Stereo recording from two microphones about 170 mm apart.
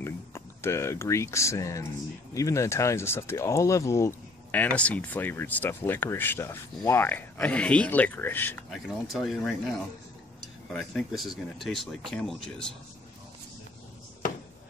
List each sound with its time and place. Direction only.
0.0 s speech: 15° left (ahead or behind)
8.6 s speech: centre (ahead or behind)
10.7 s speech: 5° left (ahead or behind)